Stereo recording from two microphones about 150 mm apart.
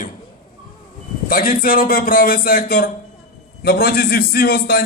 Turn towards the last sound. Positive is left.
turn(degrees=90)